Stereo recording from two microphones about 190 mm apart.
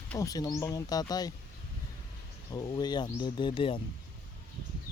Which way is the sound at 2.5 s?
20° left (ahead or behind).